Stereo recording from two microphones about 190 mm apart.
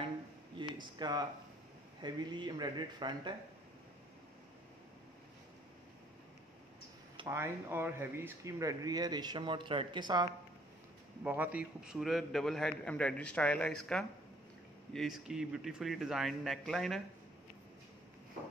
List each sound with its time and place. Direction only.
0.7 s speech: 20° right (ahead or behind)
7.2 s speech: 15° right (ahead or behind)
11.2 s a man's voice: 10° right (ahead or behind)